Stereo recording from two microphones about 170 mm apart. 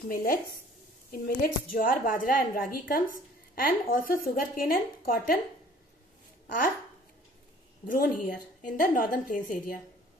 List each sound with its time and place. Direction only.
0.1 s speech: 60° left (ahead or behind)
7.8 s a woman's voice: 55° left (ahead or behind)